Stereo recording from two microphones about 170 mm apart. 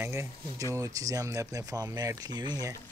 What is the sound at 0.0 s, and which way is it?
Speech, 15° right (ahead or behind).